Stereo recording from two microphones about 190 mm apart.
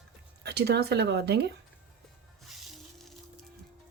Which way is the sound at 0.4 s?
60° right (ahead or behind).